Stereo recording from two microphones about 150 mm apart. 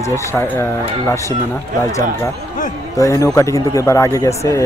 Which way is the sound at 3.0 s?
20° left (ahead or behind).